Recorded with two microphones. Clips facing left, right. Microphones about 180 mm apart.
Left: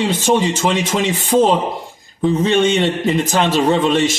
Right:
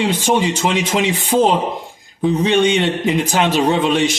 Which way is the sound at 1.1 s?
45° left (ahead or behind).